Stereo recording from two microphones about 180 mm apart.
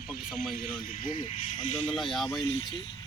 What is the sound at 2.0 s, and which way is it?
Speech, centre (ahead or behind).